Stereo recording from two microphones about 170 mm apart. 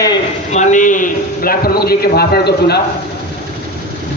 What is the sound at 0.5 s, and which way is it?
A man's voice, 45° left (ahead or behind).